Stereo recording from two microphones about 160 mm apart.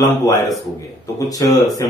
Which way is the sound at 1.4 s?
20° left (ahead or behind).